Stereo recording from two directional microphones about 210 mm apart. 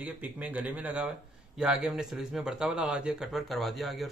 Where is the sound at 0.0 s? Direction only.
5° right (ahead or behind).